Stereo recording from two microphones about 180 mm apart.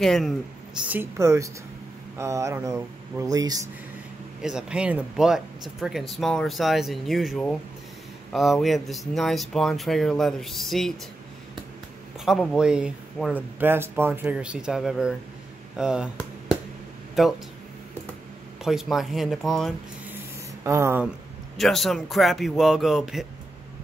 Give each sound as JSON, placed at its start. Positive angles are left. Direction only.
{"t": 0.0, "sound": "speech", "side_deg": 0}
{"t": 0.8, "sound": "speech", "side_deg": -10}
{"t": 4.4, "sound": "speech", "side_deg": -5}
{"t": 12.3, "sound": "speech", "side_deg": -5}
{"t": 17.2, "sound": "speech", "side_deg": 0}
{"t": 18.6, "sound": "speech", "side_deg": 0}
{"t": 20.6, "sound": "speech", "side_deg": -15}
{"t": 21.5, "sound": "speech", "side_deg": 0}